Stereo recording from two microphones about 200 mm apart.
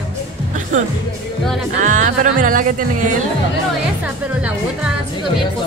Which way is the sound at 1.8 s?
40° right (ahead or behind).